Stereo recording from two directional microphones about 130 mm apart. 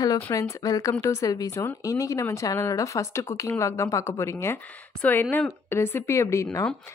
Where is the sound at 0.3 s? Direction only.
25° left (ahead or behind).